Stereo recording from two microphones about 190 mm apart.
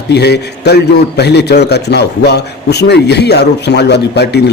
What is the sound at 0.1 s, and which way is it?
A man's voice, 60° left (ahead or behind).